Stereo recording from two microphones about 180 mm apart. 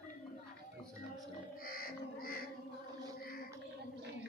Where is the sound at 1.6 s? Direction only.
55° left (ahead or behind).